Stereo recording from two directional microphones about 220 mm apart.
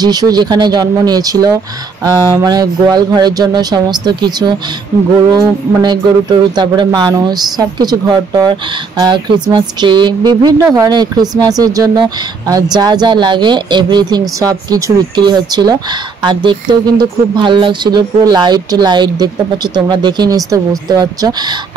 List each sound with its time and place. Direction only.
0.0 s speech: 20° right (ahead or behind)